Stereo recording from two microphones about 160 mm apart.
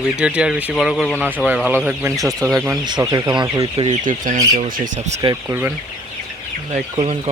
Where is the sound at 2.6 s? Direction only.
25° right (ahead or behind).